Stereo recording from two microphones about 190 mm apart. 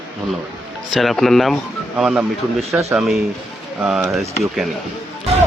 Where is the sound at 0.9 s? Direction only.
Centre (ahead or behind).